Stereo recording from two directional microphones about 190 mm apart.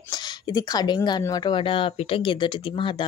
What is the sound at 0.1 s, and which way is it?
Speech, 20° left (ahead or behind).